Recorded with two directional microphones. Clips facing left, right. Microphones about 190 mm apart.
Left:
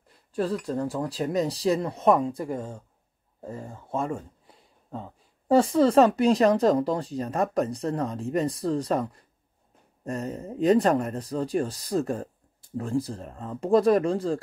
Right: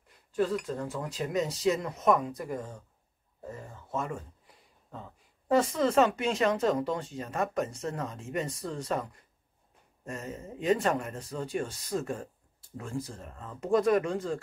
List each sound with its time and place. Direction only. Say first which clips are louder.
0.3 s speech: left 2 dB; 35° left (ahead or behind)